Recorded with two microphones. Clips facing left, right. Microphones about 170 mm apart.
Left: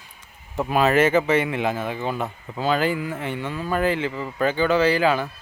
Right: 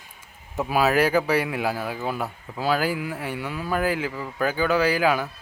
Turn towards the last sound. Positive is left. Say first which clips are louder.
# left 2 dB
turn(degrees=-10)  # may be behind; listen again after turning